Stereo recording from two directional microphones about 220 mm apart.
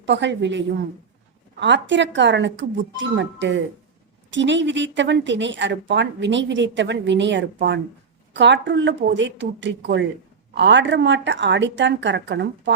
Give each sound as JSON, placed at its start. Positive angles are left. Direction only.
{"t": 0.0, "sound": "a woman's voice", "side_deg": -55}